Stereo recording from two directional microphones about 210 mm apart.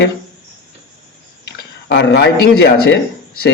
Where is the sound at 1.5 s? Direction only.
55° left (ahead or behind).